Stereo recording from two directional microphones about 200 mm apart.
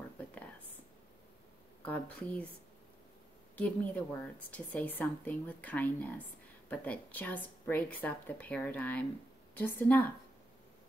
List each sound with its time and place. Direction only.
1.9 s speech: 5° left (ahead or behind)
3.5 s speech: 5° left (ahead or behind)